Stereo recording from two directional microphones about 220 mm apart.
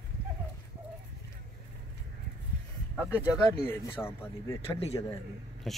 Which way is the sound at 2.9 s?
10° left (ahead or behind).